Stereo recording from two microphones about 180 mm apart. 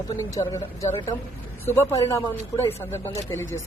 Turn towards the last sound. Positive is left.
turn(degrees=15)  # may be behind; listen again after turning